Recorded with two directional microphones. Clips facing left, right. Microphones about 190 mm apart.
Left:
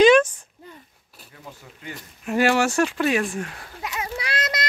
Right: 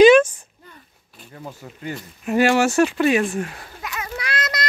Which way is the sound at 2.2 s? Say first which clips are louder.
Right 3 dB; centre (ahead or behind).